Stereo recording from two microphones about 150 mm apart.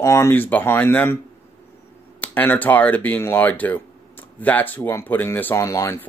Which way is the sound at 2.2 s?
10° left (ahead or behind).